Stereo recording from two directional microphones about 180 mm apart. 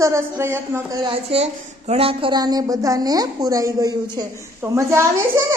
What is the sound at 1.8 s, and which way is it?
A woman's voice, 35° right (ahead or behind).